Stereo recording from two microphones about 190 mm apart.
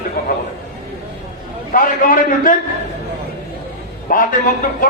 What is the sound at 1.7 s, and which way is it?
Speech, 45° left (ahead or behind).